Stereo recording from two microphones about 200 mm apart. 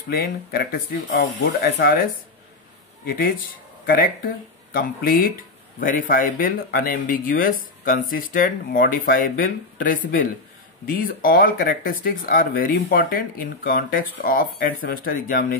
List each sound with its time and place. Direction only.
0.1 s speech: 50° left (ahead or behind)
3.8 s speech: 45° left (ahead or behind)